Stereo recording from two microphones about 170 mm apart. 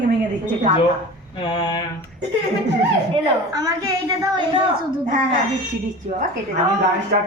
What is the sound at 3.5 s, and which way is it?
Speech, 20° right (ahead or behind).